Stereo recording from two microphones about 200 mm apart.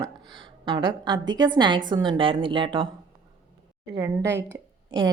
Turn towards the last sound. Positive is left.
turn(degrees=-20)  # may be behind; listen again after turning